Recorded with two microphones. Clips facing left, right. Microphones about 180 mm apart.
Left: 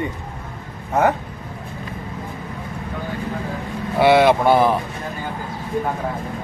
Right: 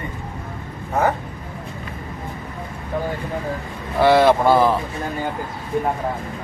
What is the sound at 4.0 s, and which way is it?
Speech, 10° left (ahead or behind).